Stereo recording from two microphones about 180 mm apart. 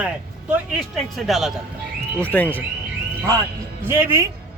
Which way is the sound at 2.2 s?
10° left (ahead or behind).